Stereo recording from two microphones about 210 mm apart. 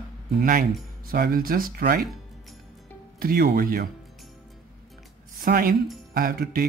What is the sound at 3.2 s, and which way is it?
Speech, 45° right (ahead or behind).